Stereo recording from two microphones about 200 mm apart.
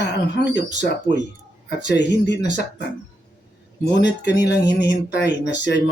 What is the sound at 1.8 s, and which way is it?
Speech, 60° left (ahead or behind).